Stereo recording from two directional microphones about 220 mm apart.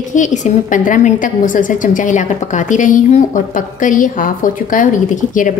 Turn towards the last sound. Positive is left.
turn(degrees=35)  # may be behind; listen again after turning